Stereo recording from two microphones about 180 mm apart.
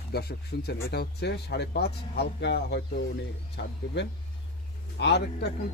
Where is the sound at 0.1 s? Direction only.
60° left (ahead or behind).